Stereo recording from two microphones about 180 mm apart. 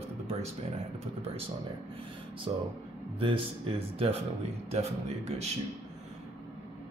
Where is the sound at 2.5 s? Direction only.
30° right (ahead or behind).